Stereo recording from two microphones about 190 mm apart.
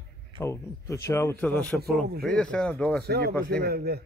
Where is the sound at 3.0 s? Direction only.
55° right (ahead or behind).